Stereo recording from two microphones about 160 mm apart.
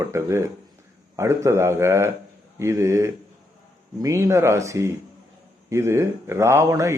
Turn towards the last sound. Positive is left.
turn(degrees=-20)  # may be behind; listen again after turning